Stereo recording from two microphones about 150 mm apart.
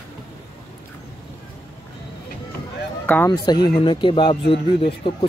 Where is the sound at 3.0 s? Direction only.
10° left (ahead or behind).